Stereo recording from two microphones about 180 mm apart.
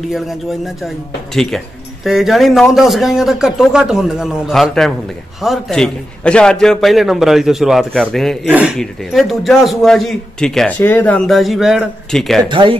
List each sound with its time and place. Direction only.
0.1 s a man's voice: centre (ahead or behind)
12.4 s speech: 30° right (ahead or behind)